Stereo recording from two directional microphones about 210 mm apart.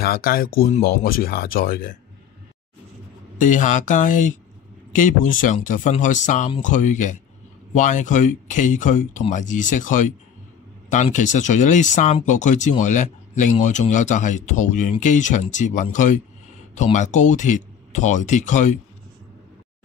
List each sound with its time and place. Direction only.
0.0 s speech: 45° left (ahead or behind)
3.3 s speech: 40° left (ahead or behind)